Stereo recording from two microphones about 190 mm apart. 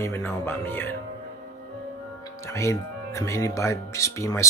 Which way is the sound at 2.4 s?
15° left (ahead or behind).